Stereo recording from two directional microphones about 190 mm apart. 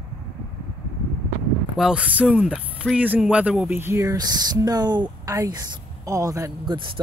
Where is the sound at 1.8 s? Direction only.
5° right (ahead or behind).